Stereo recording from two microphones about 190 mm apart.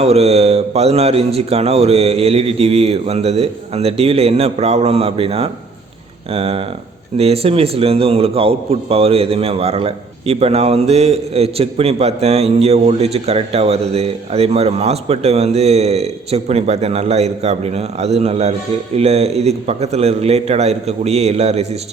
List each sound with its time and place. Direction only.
0.0 s a man's voice: 35° right (ahead or behind)